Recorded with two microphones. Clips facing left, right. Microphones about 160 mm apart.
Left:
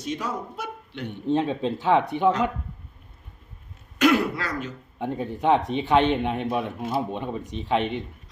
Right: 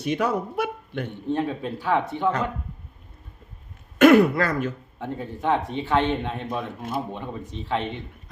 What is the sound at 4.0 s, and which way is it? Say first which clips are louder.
Speech: right 6 dB; 55° right (ahead or behind).